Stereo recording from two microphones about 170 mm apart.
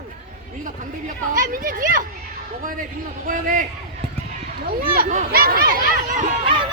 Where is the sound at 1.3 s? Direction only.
55° right (ahead or behind).